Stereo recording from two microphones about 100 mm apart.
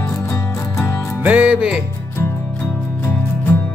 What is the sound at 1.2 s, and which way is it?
Music, 15° right (ahead or behind).